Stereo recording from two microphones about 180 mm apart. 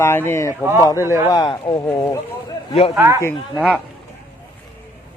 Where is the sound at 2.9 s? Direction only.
15° right (ahead or behind).